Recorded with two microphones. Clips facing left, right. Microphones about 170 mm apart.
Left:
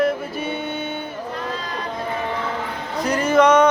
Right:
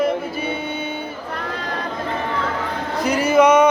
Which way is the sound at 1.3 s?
60° right (ahead or behind).